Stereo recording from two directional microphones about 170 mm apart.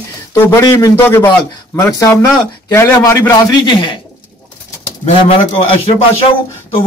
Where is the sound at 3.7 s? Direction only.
30° left (ahead or behind).